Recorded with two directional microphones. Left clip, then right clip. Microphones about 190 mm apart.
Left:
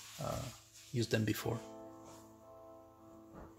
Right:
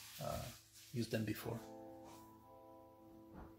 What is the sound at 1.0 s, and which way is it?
Speech, 60° left (ahead or behind).